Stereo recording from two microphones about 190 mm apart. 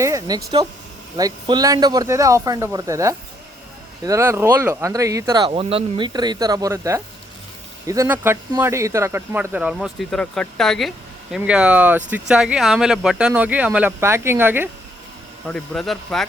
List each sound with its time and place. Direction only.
0.0 s speech: 20° right (ahead or behind)
15.4 s speech: 5° left (ahead or behind)